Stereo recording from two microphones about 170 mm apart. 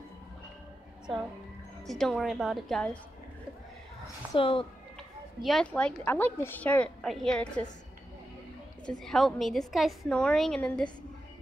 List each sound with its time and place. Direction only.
1.9 s a woman's voice: 5° left (ahead or behind)
4.4 s speech: 30° left (ahead or behind)
4.9 s a woman's voice: centre (ahead or behind)
8.8 s a woman's voice: centre (ahead or behind)